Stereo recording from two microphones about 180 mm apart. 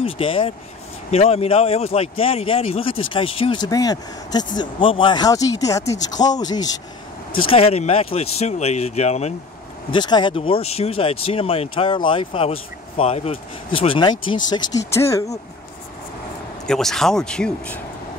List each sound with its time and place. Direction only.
0.0 s speech: 30° left (ahead or behind)
7.4 s speech: 35° left (ahead or behind)
9.8 s speech: 25° left (ahead or behind)
16.6 s speech: centre (ahead or behind)